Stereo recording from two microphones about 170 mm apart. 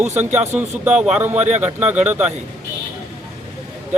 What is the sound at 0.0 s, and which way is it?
Speech, 40° right (ahead or behind).